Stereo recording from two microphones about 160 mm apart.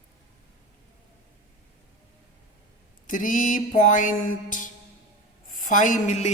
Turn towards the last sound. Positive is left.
turn(degrees=50)  # may be behind; listen again after turning